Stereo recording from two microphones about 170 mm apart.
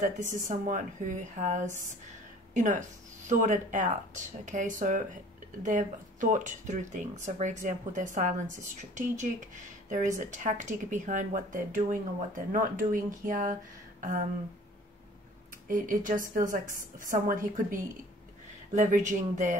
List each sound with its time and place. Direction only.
0.0 s speech: 45° right (ahead or behind)
15.7 s speech: 55° right (ahead or behind)